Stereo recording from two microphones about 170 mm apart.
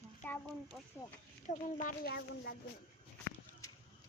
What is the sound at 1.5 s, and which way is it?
Speech, 45° left (ahead or behind).